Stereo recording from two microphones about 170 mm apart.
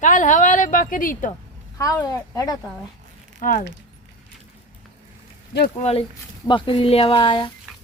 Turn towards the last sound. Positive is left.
turn(degrees=30)  # may be behind; listen again after turning